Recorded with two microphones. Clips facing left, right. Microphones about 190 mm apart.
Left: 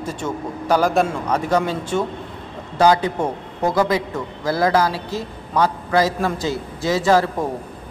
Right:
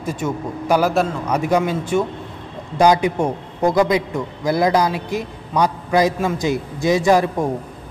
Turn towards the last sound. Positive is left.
turn(degrees=-15)  # may be behind; listen again after turning